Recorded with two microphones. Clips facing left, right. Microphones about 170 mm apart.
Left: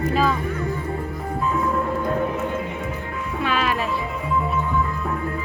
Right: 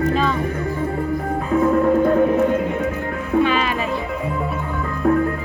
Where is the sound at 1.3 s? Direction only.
55° right (ahead or behind).